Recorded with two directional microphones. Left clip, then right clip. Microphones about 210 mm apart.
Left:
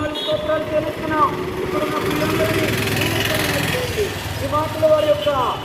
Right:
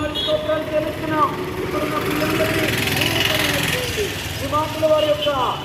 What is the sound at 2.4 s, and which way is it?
Vehicle, 35° left (ahead or behind).